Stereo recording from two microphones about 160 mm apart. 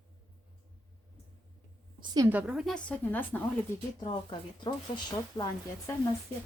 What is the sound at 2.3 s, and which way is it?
A woman's voice, 5° right (ahead or behind).